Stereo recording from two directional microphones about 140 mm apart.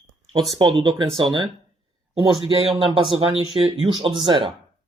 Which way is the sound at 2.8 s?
35° right (ahead or behind).